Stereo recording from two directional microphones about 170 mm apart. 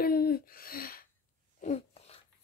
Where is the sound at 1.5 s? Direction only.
40° left (ahead or behind).